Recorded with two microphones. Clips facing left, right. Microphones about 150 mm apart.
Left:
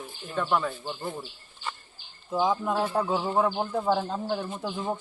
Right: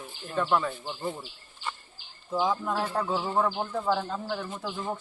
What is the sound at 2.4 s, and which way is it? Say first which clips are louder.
Speech: left 3 dB; 10° left (ahead or behind).